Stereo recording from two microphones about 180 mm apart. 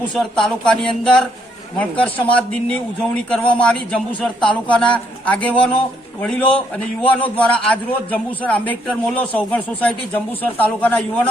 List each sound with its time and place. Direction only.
0.1 s a man's voice: 5° left (ahead or behind)